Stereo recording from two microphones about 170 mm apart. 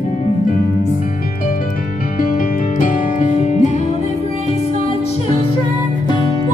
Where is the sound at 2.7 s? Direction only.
50° left (ahead or behind).